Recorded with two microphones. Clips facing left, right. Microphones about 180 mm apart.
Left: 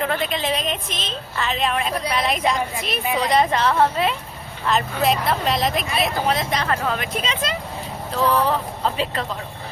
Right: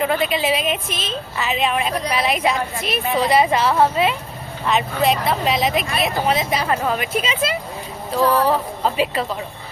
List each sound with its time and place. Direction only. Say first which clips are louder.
0.0 s a woman's voice: right 4 dB; 10° right (ahead or behind)